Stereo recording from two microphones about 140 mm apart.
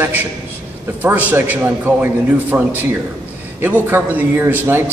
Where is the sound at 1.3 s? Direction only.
15° right (ahead or behind).